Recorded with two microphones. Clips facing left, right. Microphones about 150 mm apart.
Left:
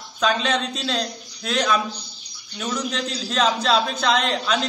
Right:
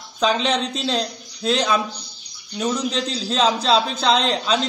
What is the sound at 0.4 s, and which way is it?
A man's voice, 30° right (ahead or behind).